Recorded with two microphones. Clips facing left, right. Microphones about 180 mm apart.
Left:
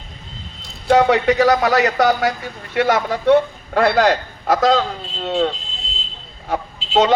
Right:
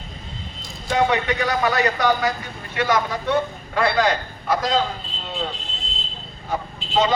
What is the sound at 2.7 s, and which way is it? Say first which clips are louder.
A man's voice: left 4 dB; 70° left (ahead or behind).